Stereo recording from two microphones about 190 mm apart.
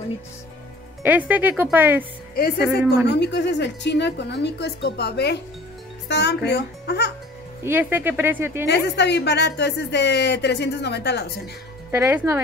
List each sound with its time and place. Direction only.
1.0 s speech: 10° right (ahead or behind)
2.3 s a woman's voice: 55° left (ahead or behind)
7.6 s speech: 10° right (ahead or behind)
8.6 s a woman's voice: 65° left (ahead or behind)
11.9 s speech: 10° right (ahead or behind)